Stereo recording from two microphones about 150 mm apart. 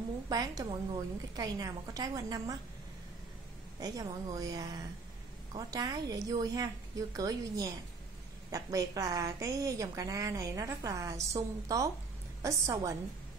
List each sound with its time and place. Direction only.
0.3 s a woman's voice: 30° right (ahead or behind)
3.8 s a woman's voice: 25° right (ahead or behind)